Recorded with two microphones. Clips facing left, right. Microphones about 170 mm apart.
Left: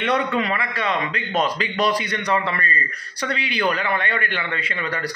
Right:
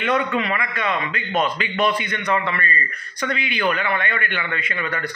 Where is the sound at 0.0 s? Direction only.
35° left (ahead or behind).